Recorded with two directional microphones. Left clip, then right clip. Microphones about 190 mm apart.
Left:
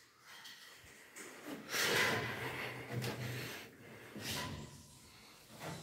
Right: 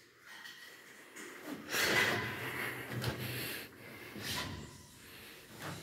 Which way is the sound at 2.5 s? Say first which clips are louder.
Right 4 dB; centre (ahead or behind).